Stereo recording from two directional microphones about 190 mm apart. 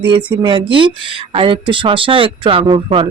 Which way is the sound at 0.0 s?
25° right (ahead or behind).